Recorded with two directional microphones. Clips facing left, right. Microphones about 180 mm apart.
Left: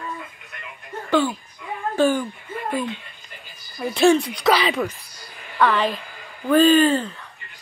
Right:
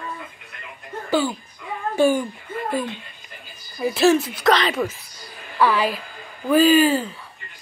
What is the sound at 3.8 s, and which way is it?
Speech, 5° right (ahead or behind).